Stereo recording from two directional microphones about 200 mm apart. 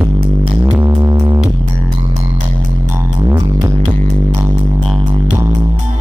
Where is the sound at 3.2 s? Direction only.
15° right (ahead or behind).